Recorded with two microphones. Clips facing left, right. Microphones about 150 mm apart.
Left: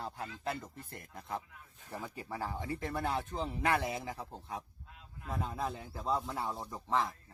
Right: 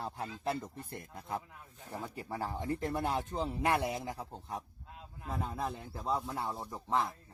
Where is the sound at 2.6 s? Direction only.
Centre (ahead or behind).